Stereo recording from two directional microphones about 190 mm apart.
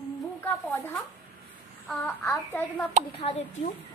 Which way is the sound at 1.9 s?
5° left (ahead or behind).